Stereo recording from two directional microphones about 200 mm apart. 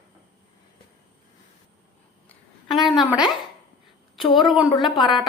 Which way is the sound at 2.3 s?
Centre (ahead or behind).